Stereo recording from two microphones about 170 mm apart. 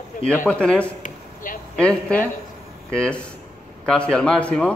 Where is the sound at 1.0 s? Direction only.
50° left (ahead or behind).